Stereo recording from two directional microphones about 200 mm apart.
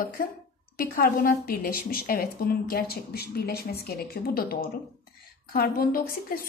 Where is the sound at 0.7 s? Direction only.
45° left (ahead or behind).